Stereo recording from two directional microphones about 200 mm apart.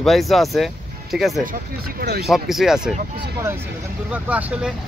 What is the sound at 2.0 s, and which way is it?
Speech, 50° right (ahead or behind).